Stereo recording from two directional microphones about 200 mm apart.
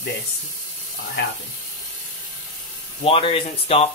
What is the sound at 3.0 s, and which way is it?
Speech, 25° left (ahead or behind).